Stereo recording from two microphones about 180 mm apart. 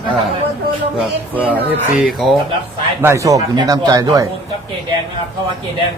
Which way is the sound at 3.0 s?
15° right (ahead or behind).